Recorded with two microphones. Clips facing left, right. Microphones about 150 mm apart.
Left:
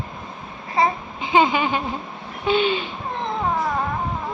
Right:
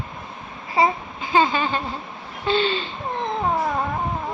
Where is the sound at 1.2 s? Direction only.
20° left (ahead or behind).